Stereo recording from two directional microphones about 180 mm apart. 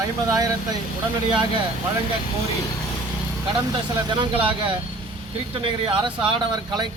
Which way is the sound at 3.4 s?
25° right (ahead or behind).